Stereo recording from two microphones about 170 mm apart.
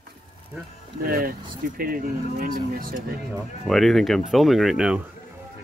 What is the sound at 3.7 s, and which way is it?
Speech, centre (ahead or behind).